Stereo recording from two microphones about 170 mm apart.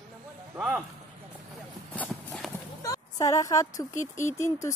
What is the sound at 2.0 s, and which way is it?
Clip-clop, centre (ahead or behind).